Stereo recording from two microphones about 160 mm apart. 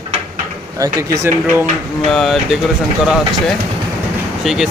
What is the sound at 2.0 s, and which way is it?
Speech, centre (ahead or behind).